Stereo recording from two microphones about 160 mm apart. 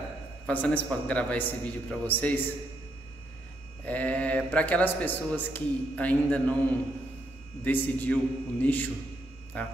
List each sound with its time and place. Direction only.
0.5 s speech: 10° left (ahead or behind)
3.8 s speech: 10° left (ahead or behind)
7.6 s speech: 10° left (ahead or behind)